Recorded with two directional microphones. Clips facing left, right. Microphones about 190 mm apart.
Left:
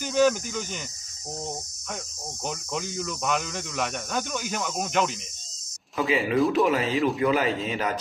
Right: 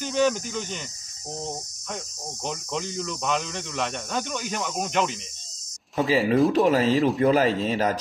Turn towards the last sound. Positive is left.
turn(degrees=-35)  # may be behind; listen again after turning